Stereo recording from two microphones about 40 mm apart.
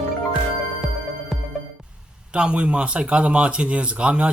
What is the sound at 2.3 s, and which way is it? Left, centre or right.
Speech, right.